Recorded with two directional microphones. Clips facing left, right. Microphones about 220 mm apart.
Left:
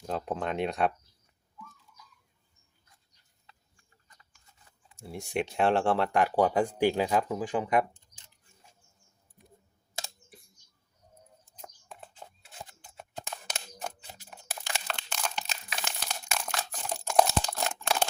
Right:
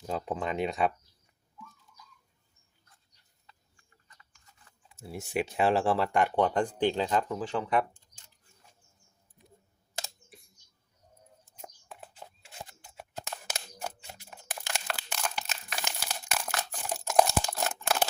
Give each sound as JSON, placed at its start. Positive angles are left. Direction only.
{"t": 0.0, "sound": "speech", "side_deg": 0}
{"t": 4.9, "sound": "speech", "side_deg": -5}
{"t": 11.6, "sound": "a sound", "side_deg": -5}
{"t": 14.6, "sound": "crumpling", "side_deg": -5}